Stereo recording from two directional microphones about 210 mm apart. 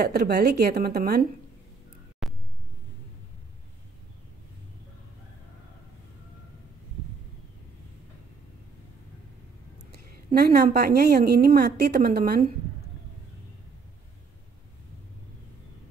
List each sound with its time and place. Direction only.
0.0 s speech: 50° right (ahead or behind)
2.2 s a sound: 5° right (ahead or behind)
9.8 s a woman's voice: 50° right (ahead or behind)